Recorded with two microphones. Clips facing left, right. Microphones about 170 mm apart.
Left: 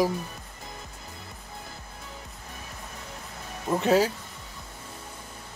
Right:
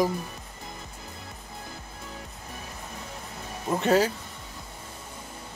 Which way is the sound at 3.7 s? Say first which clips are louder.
Even; 5° left (ahead or behind).